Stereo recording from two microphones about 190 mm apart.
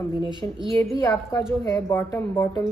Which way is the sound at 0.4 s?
20° left (ahead or behind).